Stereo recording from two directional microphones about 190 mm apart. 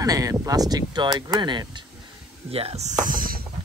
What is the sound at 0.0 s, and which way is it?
Speech, 20° right (ahead or behind).